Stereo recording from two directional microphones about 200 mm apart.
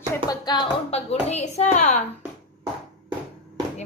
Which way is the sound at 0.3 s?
20° left (ahead or behind).